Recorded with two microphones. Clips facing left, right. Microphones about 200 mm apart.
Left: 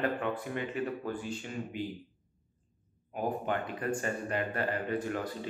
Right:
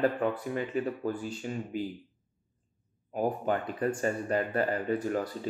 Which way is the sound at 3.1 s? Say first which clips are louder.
Right 4 dB; 40° right (ahead or behind).